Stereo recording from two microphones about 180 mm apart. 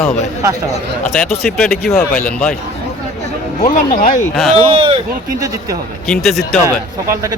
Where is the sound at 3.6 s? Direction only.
45° left (ahead or behind).